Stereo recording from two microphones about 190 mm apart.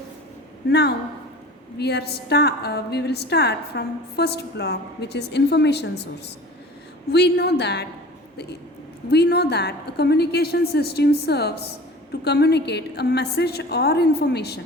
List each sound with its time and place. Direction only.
0.7 s a woman's voice: 60° left (ahead or behind)
9.0 s a woman's voice: 60° left (ahead or behind)